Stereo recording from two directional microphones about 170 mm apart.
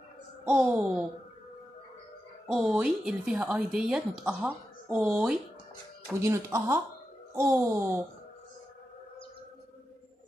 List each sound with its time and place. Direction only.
0.5 s speech: 5° right (ahead or behind)
2.4 s a woman's voice: 5° right (ahead or behind)